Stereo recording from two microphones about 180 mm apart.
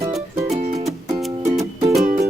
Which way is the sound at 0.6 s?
35° right (ahead or behind).